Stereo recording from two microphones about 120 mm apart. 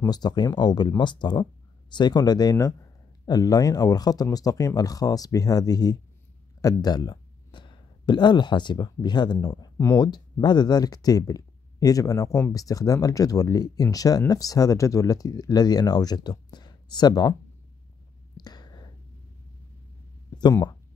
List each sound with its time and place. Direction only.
0.0 s speech: 35° left (ahead or behind)
9.8 s speech: 25° left (ahead or behind)
10.0 s speech: 35° left (ahead or behind)
18.3 s a sound: 35° left (ahead or behind)